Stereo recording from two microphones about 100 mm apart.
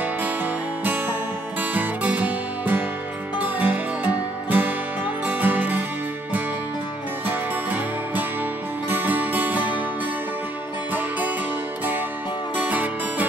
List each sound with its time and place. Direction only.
0.0 s music: 15° right (ahead or behind)
7.2 s music: 20° right (ahead or behind)
10.9 s music: 15° right (ahead or behind)
12.5 s music: 15° right (ahead or behind)